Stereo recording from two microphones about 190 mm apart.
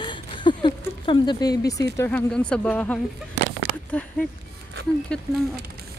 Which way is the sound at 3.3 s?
70° right (ahead or behind).